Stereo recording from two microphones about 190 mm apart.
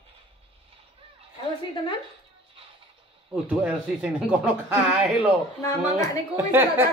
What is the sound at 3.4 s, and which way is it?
Speech, 5° right (ahead or behind).